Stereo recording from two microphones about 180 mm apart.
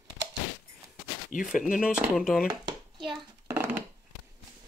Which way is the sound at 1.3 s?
50° left (ahead or behind).